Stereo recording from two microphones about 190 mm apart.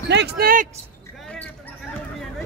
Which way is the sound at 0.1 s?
60° right (ahead or behind).